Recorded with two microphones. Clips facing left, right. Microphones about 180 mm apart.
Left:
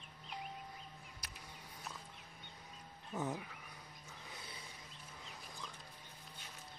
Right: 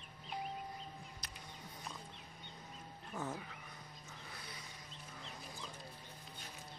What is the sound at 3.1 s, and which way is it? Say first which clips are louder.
Speech: left 3 dB; 20° left (ahead or behind).